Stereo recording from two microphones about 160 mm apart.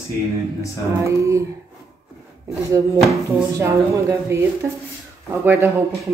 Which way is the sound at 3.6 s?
20° right (ahead or behind).